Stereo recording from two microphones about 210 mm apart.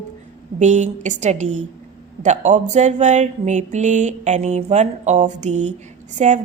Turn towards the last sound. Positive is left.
turn(degrees=-30)  # may be behind; listen again after turning